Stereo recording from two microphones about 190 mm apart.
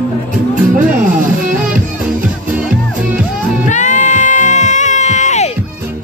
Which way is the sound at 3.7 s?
40° left (ahead or behind).